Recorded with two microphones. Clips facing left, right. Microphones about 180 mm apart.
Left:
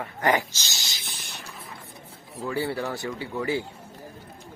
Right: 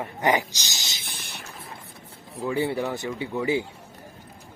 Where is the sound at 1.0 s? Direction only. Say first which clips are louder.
Right 1 dB; 55° right (ahead or behind).